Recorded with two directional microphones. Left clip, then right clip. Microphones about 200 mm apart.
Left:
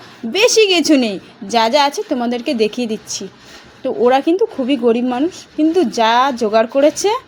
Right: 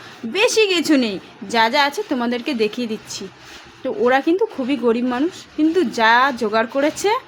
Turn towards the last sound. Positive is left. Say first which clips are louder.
# left 5 dB
turn(degrees=10)  # may be behind; listen again after turning